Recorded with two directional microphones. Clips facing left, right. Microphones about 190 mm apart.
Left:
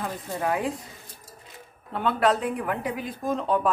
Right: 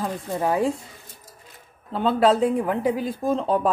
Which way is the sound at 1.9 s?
30° right (ahead or behind).